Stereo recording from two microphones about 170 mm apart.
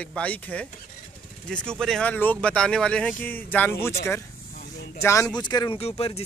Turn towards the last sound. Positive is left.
turn(degrees=35)  # may be behind; listen again after turning